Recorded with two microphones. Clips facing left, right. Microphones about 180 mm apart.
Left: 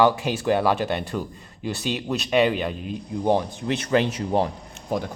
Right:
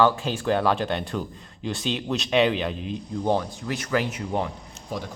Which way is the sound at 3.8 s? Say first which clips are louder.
Left 4 dB; 30° left (ahead or behind).